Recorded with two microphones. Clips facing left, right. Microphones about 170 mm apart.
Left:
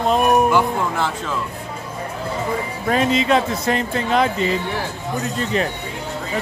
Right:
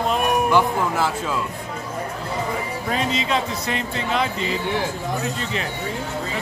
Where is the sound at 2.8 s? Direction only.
55° left (ahead or behind).